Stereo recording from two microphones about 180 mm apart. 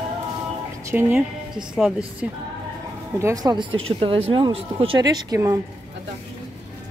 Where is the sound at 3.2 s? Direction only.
20° right (ahead or behind).